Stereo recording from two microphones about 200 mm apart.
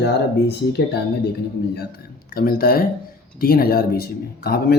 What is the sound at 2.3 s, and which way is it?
Speech, 50° left (ahead or behind).